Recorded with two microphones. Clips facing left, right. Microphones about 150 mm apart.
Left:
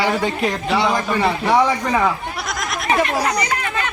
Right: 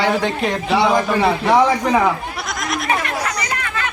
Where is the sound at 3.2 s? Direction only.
25° left (ahead or behind).